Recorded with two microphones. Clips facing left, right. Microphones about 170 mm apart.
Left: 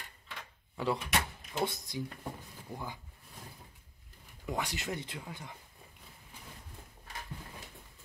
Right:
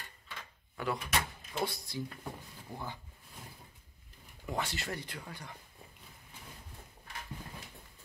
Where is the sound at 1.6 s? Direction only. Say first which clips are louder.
Left 2 dB; 20° left (ahead or behind).